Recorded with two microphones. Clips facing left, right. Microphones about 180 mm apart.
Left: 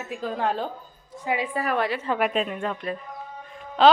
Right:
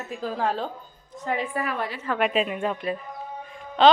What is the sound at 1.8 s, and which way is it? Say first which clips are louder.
Speech: left 5 dB; 70° left (ahead or behind).